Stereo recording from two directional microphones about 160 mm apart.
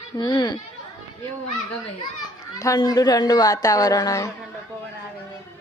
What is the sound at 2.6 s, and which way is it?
Speech, 20° left (ahead or behind).